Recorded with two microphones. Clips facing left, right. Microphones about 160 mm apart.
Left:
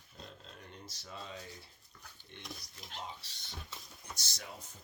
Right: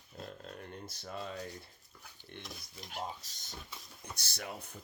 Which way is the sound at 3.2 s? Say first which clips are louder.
Even; 45° right (ahead or behind).